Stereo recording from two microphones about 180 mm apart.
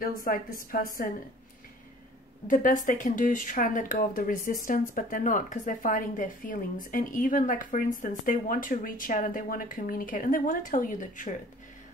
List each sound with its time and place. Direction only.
0.0 s a woman's voice: 50° left (ahead or behind)
2.4 s a woman's voice: 50° left (ahead or behind)